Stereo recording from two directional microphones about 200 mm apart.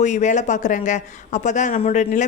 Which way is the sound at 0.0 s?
35° left (ahead or behind).